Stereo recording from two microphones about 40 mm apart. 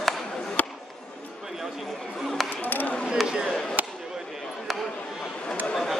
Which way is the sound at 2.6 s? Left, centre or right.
Left.